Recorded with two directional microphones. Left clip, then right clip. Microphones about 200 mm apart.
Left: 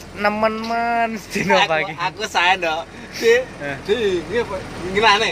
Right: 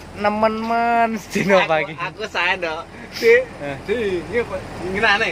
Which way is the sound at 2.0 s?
35° left (ahead or behind).